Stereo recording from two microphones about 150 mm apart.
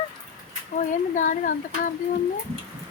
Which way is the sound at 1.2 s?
60° left (ahead or behind).